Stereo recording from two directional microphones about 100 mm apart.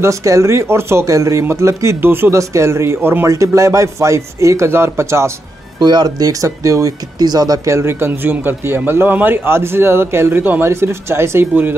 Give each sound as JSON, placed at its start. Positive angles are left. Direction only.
{"t": 0.0, "sound": "speech", "side_deg": -30}
{"t": 5.8, "sound": "speech", "side_deg": -45}